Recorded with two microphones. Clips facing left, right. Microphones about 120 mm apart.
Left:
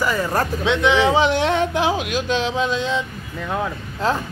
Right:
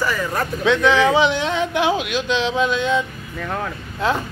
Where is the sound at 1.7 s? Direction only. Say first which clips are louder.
Right 1 dB; 35° left (ahead or behind).